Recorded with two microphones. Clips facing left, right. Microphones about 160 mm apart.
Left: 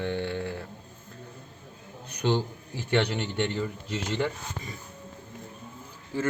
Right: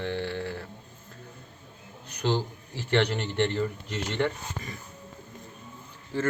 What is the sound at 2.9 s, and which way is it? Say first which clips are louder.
A man's voice: right 1 dB; 10° left (ahead or behind).